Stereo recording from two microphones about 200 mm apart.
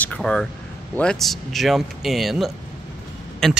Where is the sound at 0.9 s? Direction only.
5° left (ahead or behind).